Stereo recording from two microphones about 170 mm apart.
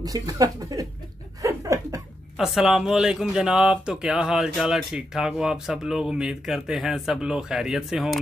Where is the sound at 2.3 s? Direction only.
Centre (ahead or behind).